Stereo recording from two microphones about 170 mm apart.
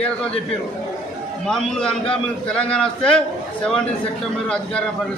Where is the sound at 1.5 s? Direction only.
Centre (ahead or behind).